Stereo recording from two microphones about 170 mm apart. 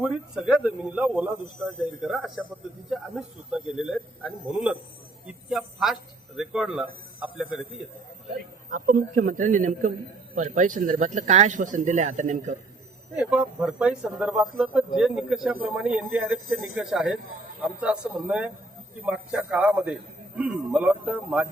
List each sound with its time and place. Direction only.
0.0 s a man's voice: 5° right (ahead or behind)
5.2 s a sound: 5° right (ahead or behind)
8.7 s speech: 55° right (ahead or behind)
13.1 s a man's voice: 5° right (ahead or behind)